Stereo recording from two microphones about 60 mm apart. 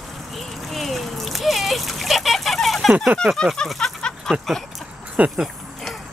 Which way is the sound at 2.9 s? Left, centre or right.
Centre.